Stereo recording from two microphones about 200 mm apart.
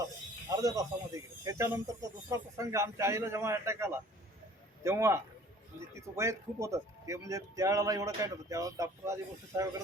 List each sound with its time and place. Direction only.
0.5 s speech: 15° right (ahead or behind)